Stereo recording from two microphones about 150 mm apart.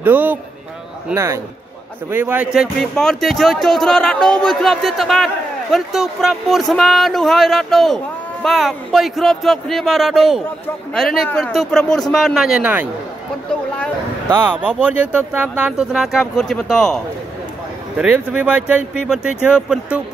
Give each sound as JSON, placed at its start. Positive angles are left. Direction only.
{"t": 0.0, "sound": "a man's voice", "side_deg": -10}
{"t": 14.3, "sound": "speech", "side_deg": -10}